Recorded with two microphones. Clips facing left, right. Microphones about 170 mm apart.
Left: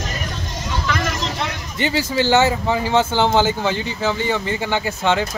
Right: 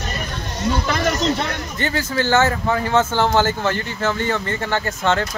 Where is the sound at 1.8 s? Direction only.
15° left (ahead or behind).